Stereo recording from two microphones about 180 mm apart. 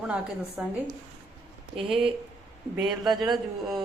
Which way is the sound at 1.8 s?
30° right (ahead or behind).